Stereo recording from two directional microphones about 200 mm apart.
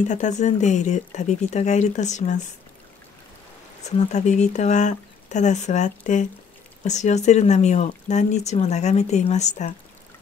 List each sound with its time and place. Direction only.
0.1 s speech: 35° left (ahead or behind)
4.1 s speech: 35° left (ahead or behind)